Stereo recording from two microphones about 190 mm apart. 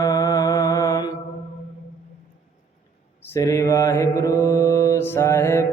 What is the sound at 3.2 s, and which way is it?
Mantra, 15° left (ahead or behind).